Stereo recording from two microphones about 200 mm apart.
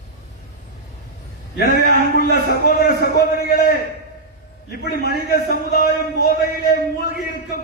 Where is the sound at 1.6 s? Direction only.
50° left (ahead or behind).